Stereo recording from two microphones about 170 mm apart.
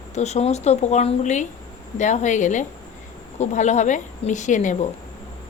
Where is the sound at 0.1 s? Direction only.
40° left (ahead or behind).